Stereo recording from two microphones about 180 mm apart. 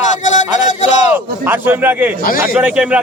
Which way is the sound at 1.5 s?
10° right (ahead or behind).